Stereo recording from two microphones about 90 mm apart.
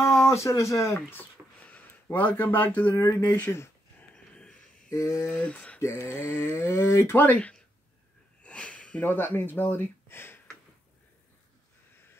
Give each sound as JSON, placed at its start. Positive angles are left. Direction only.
{"t": 0.2, "sound": "speech", "side_deg": 30}
{"t": 1.6, "sound": "speech", "side_deg": 20}
{"t": 4.1, "sound": "a sound", "side_deg": 10}
{"t": 4.8, "sound": "a sound", "side_deg": 35}
{"t": 5.4, "sound": "speech", "side_deg": 15}
{"t": 5.8, "sound": "speech", "side_deg": 30}